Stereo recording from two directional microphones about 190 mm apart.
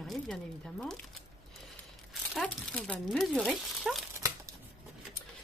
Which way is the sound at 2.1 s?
5° left (ahead or behind).